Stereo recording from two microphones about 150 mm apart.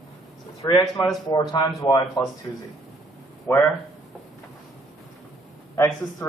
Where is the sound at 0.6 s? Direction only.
20° left (ahead or behind).